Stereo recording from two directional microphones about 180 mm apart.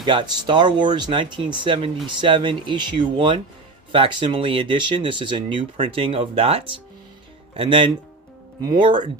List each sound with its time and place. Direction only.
0.0 s speech: 25° right (ahead or behind)